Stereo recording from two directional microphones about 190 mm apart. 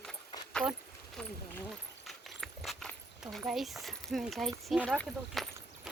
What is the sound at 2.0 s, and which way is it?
Clip-clop, centre (ahead or behind).